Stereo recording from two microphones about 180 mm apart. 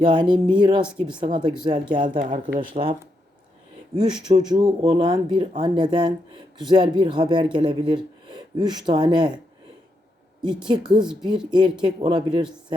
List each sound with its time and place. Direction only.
0.0 s speech: 25° right (ahead or behind)
3.9 s speech: 25° right (ahead or behind)
10.6 s speech: 25° right (ahead or behind)